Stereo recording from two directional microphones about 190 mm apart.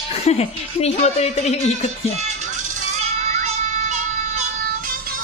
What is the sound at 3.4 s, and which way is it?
Child singing, 35° right (ahead or behind).